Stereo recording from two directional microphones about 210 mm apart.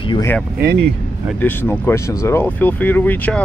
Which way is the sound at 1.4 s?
10° left (ahead or behind).